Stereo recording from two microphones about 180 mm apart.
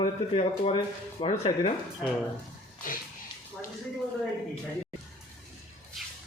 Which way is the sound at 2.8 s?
50° left (ahead or behind).